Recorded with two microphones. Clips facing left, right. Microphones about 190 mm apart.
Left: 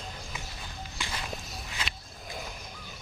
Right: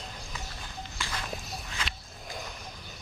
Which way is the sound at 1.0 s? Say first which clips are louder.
Even; 20° left (ahead or behind).